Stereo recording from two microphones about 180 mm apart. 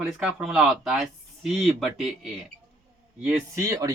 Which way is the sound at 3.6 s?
20° right (ahead or behind).